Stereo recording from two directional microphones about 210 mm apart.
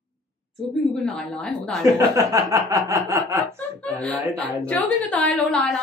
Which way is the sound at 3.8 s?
5° left (ahead or behind).